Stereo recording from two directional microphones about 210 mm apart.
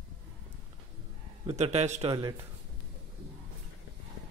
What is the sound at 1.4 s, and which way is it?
Speech, 30° right (ahead or behind).